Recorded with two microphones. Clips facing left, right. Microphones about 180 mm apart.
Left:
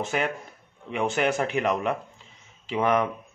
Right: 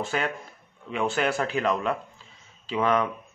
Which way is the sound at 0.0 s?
20° left (ahead or behind).